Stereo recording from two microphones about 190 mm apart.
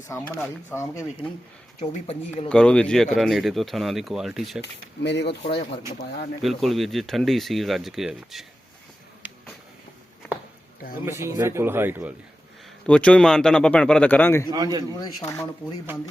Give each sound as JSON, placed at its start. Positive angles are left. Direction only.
{"t": 0.1, "sound": "speech", "side_deg": 10}
{"t": 2.5, "sound": "speech", "side_deg": 5}
{"t": 4.6, "sound": "speech", "side_deg": 65}
{"t": 6.4, "sound": "speech", "side_deg": 0}
{"t": 11.2, "sound": "speech", "side_deg": -15}
{"t": 12.8, "sound": "speech", "side_deg": 5}
{"t": 14.5, "sound": "a man's voice", "side_deg": -20}
{"t": 14.9, "sound": "speech", "side_deg": 20}